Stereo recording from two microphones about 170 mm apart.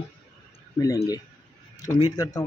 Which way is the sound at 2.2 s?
20° left (ahead or behind).